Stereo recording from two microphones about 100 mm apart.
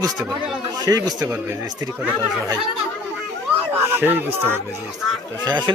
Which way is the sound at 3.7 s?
20° right (ahead or behind).